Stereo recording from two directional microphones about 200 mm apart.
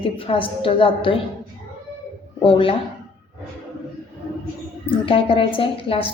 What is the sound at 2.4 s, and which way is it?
Speech, 25° left (ahead or behind).